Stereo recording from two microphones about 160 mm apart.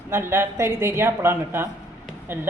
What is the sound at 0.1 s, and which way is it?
Speech, 15° right (ahead or behind).